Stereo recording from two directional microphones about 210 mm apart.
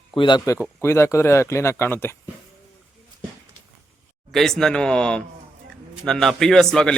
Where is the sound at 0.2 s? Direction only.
20° left (ahead or behind).